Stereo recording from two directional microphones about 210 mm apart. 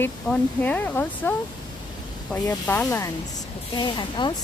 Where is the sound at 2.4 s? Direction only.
10° left (ahead or behind).